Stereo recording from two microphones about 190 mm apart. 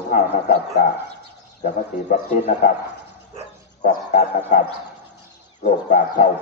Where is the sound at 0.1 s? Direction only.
45° left (ahead or behind).